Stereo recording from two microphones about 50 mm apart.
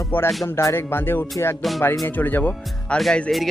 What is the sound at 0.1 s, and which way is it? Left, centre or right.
Speech, left.